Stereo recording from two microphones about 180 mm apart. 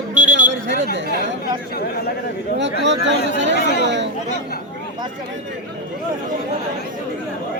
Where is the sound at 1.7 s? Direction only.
60° left (ahead or behind).